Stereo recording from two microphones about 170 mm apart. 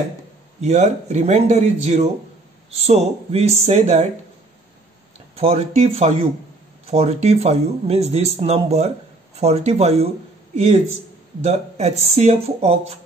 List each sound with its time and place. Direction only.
0.6 s speech: 40° right (ahead or behind)
5.3 s speech: 35° right (ahead or behind)